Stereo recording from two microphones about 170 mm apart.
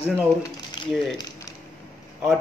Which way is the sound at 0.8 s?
25° left (ahead or behind).